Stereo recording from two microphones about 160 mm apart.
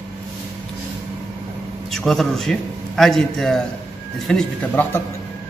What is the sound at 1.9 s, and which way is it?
A man's voice, centre (ahead or behind).